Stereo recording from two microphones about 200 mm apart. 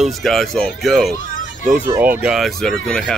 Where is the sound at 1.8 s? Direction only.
10° right (ahead or behind).